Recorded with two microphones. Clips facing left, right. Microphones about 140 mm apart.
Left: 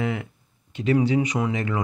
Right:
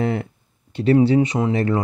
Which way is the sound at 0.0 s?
35° right (ahead or behind).